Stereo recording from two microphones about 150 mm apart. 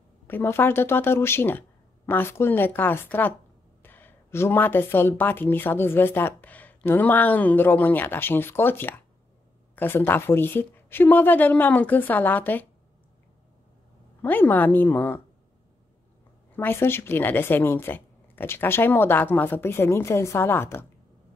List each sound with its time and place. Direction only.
0.3 s speech: 15° left (ahead or behind)
14.2 s speech: 10° left (ahead or behind)
16.5 s speech: 15° left (ahead or behind)